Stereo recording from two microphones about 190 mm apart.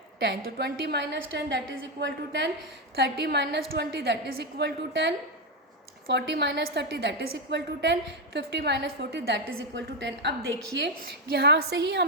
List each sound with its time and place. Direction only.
0.2 s a woman's voice: 60° right (ahead or behind)